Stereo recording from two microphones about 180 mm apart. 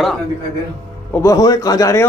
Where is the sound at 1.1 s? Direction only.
20° left (ahead or behind).